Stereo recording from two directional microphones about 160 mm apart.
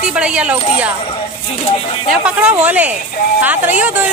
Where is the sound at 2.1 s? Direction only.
5° right (ahead or behind).